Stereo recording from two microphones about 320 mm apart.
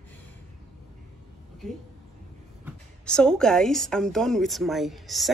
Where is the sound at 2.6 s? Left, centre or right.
Centre.